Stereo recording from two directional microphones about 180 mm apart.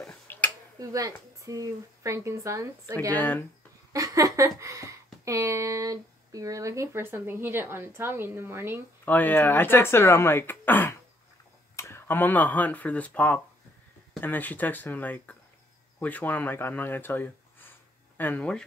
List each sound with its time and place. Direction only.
0.0 s finger snapping: 5° left (ahead or behind)
0.7 s speech: 20° right (ahead or behind)
3.1 s speech: 10° left (ahead or behind)
3.9 s a sound: 20° right (ahead or behind)
9.0 s speech: 10° left (ahead or behind)